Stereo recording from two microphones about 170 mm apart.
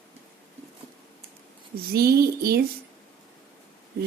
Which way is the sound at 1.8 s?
65° right (ahead or behind).